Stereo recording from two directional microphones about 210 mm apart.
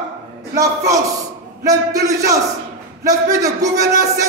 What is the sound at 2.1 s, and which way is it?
A man's voice, 15° right (ahead or behind).